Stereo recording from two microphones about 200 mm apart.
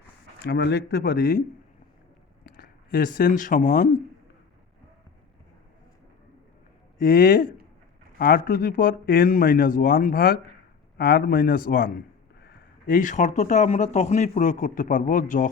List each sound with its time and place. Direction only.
0.4 s a man's voice: 55° left (ahead or behind)
2.4 s speech: 45° left (ahead or behind)
7.0 s a man's voice: 50° left (ahead or behind)